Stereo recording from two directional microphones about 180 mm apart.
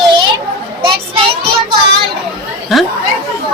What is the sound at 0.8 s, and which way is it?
Child singing, 30° right (ahead or behind).